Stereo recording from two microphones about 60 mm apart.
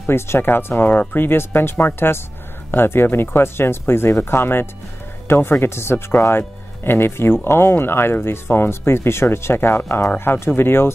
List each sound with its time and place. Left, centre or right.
0.0 s speech: left